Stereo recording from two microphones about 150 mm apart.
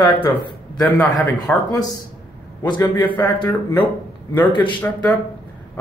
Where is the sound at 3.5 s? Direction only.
10° left (ahead or behind).